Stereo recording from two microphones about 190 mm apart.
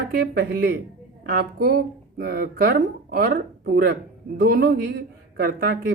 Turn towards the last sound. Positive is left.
turn(degrees=-55)  # may be behind; listen again after turning